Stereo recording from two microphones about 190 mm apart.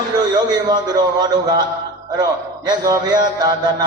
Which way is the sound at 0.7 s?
20° right (ahead or behind).